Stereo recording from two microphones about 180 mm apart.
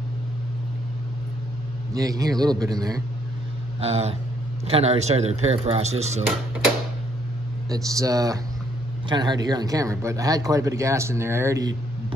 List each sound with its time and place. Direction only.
2.0 s speech: 20° right (ahead or behind)
3.8 s speech: 35° right (ahead or behind)
7.7 s speech: 20° right (ahead or behind)